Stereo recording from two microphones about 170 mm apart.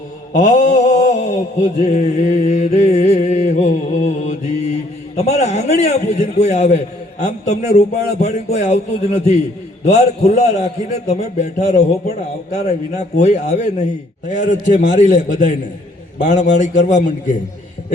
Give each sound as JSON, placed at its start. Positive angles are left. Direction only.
{"t": 0.3, "sound": "mantra", "side_deg": 45}
{"t": 6.4, "sound": "a man's voice", "side_deg": 45}